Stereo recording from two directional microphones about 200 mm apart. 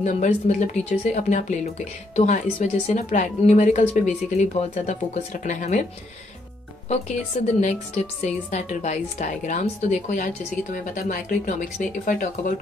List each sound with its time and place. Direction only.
0.0 s a woman's voice: 35° left (ahead or behind)
7.6 s a woman's voice: 35° left (ahead or behind)